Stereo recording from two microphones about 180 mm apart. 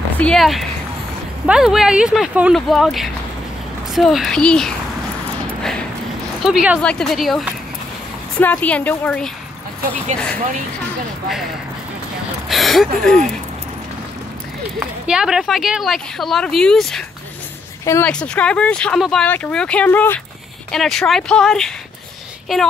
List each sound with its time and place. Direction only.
0.2 s speech: centre (ahead or behind)
5.6 s clip-clop: 5° left (ahead or behind)
6.4 s speech: 5° right (ahead or behind)
12.4 s speech: centre (ahead or behind)
14.8 s speech: 5° right (ahead or behind)